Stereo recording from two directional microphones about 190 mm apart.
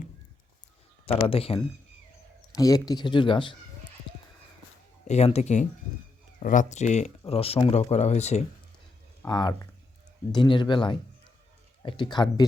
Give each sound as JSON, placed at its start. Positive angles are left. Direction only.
{"t": 1.3, "sound": "speech", "side_deg": 30}
{"t": 2.4, "sound": "speech", "side_deg": 20}
{"t": 5.0, "sound": "speech", "side_deg": 35}
{"t": 9.2, "sound": "speech", "side_deg": 20}